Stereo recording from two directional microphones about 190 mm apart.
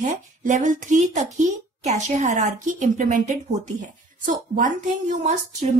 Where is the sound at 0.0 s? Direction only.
40° right (ahead or behind).